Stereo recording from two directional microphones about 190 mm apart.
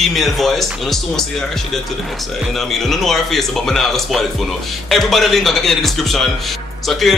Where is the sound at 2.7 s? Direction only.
Centre (ahead or behind).